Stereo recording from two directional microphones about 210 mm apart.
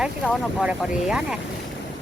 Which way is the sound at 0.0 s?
5° right (ahead or behind).